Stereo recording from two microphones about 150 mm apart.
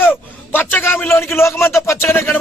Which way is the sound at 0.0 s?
10° left (ahead or behind).